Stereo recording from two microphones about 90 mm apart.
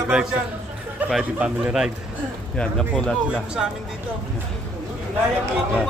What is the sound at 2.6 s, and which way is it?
Speech, 10° left (ahead or behind).